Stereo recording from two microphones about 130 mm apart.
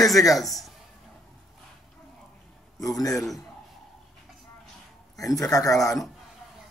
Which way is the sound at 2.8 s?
25° left (ahead or behind).